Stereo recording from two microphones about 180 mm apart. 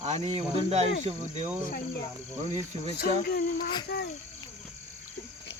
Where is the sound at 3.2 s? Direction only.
55° left (ahead or behind).